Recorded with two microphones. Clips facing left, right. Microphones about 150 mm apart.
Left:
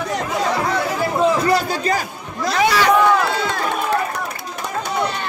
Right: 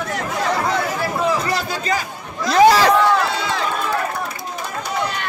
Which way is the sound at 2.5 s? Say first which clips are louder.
Right 5 dB; 35° right (ahead or behind).